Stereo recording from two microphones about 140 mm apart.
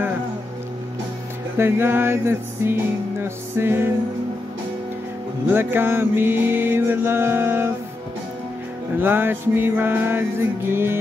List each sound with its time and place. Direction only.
1.6 s music: 15° right (ahead or behind)
5.5 s music: 15° right (ahead or behind)
9.0 s music: 15° right (ahead or behind)